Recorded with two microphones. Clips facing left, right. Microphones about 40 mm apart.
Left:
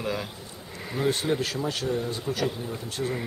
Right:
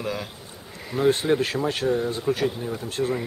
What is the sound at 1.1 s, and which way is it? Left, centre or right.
Speech, right.